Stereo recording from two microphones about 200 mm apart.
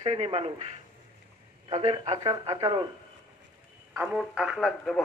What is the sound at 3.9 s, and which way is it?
Speech, 10° right (ahead or behind).